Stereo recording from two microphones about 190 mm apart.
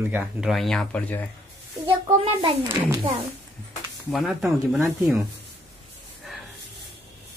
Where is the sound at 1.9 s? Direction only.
25° right (ahead or behind).